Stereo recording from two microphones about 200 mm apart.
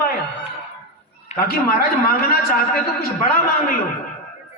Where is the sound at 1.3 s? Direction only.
50° left (ahead or behind).